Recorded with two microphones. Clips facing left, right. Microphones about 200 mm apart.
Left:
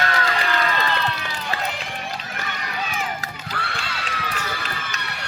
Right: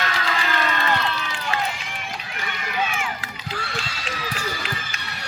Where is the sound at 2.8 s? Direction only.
40° left (ahead or behind).